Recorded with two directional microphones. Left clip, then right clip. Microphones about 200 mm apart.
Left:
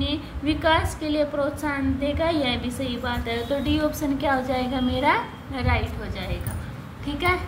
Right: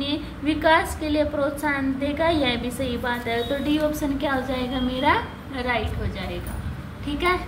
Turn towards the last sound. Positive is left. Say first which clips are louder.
# right 1 dB
turn(degrees=15)  # may be behind; listen again after turning